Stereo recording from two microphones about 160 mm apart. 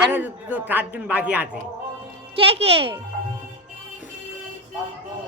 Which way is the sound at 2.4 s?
35° right (ahead or behind).